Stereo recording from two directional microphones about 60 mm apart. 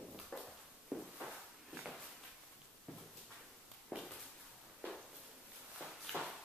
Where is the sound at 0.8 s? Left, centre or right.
Centre.